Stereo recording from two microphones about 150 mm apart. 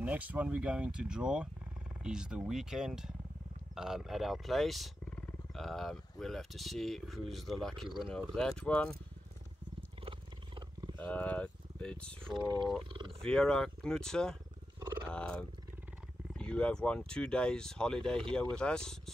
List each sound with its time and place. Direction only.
0.0 s speech: 10° right (ahead or behind); by 8.9 s 5° left (ahead or behind)
10.0 s wild animals: 30° right (ahead or behind)
11.0 s speech: 10° left (ahead or behind)
15.0 s wild animals: 5° left (ahead or behind)
16.3 s speech: 5° left (ahead or behind)